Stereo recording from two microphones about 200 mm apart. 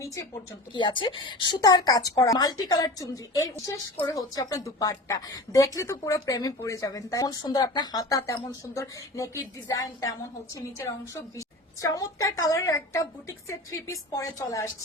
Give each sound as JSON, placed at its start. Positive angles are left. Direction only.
{"t": 0.7, "sound": "a woman's voice", "side_deg": 25}